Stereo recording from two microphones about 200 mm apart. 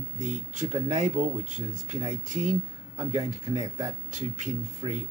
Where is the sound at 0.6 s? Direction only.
35° right (ahead or behind).